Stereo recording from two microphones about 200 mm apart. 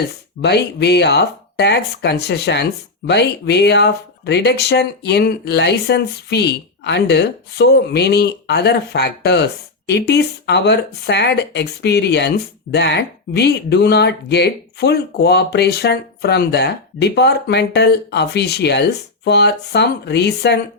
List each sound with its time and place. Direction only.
0.4 s speech: 55° left (ahead or behind)